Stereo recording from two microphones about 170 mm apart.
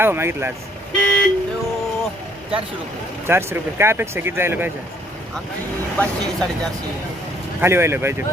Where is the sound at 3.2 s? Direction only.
15° right (ahead or behind).